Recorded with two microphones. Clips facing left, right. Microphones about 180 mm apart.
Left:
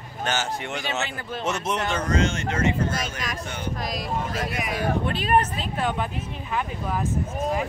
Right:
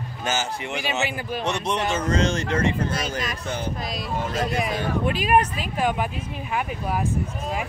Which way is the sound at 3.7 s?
Centre (ahead or behind).